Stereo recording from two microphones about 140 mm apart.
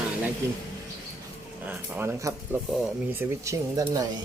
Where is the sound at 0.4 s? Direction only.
20° right (ahead or behind).